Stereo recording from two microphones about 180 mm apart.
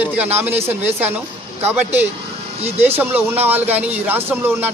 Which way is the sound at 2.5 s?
35° right (ahead or behind).